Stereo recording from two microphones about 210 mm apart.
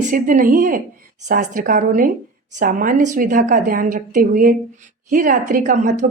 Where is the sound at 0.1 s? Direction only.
40° right (ahead or behind).